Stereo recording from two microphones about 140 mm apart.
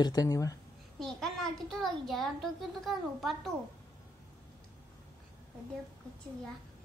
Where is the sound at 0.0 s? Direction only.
25° left (ahead or behind).